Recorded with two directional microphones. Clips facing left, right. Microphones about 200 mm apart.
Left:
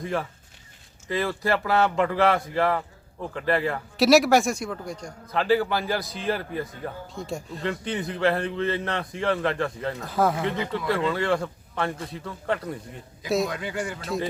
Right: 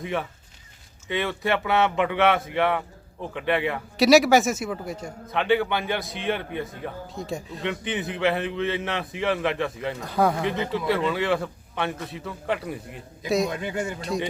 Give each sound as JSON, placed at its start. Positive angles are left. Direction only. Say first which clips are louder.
{"t": 0.0, "sound": "a man's voice", "louder": "even", "side_deg": 0}
{"t": 13.5, "sound": "speech", "louder": "right 2 dB", "side_deg": -20}
{"t": 14.0, "sound": "a man's voice", "louder": "left 1 dB", "side_deg": 0}